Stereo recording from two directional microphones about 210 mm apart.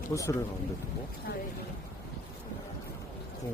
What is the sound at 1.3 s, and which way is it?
Speech, 50° left (ahead or behind).